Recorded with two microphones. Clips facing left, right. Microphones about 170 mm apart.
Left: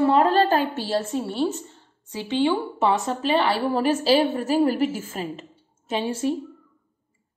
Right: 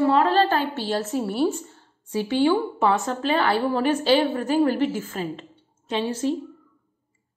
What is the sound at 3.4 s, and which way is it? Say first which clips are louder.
A woman's voice: even; 35° left (ahead or behind).